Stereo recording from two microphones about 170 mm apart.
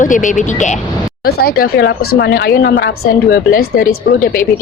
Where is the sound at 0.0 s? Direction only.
50° left (ahead or behind).